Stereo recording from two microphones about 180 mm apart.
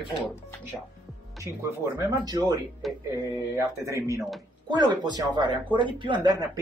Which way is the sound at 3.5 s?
15° right (ahead or behind).